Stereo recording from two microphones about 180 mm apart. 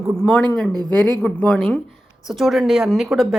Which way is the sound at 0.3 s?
5° left (ahead or behind).